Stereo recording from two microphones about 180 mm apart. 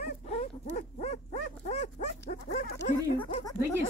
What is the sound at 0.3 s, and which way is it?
Dog, 35° left (ahead or behind).